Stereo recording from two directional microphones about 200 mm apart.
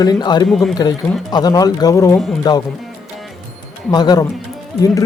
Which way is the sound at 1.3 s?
20° left (ahead or behind).